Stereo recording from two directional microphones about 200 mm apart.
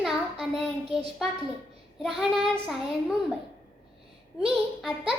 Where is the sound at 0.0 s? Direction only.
Centre (ahead or behind).